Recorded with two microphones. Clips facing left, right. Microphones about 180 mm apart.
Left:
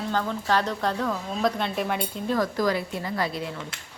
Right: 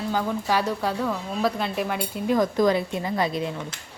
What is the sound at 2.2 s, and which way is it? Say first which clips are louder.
A woman's voice: right 4 dB; 20° right (ahead or behind).